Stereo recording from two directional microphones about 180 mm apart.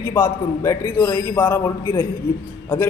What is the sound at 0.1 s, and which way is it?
Speech, 15° left (ahead or behind).